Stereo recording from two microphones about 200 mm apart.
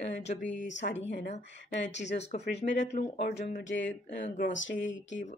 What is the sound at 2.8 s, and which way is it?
Speech, 35° left (ahead or behind).